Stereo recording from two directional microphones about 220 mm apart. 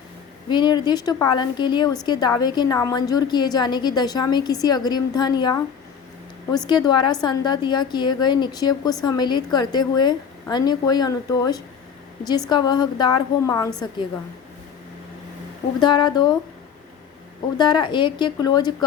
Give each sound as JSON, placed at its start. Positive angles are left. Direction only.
{"t": 0.5, "sound": "a woman's voice", "side_deg": 20}
{"t": 6.7, "sound": "a woman's voice", "side_deg": 20}
{"t": 15.8, "sound": "a woman's voice", "side_deg": 20}
{"t": 17.6, "sound": "a woman's voice", "side_deg": 20}